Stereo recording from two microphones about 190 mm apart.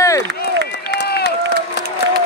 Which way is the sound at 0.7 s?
60° left (ahead or behind).